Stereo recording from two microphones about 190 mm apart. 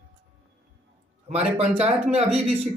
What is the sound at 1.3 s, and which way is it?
Speech, 35° right (ahead or behind).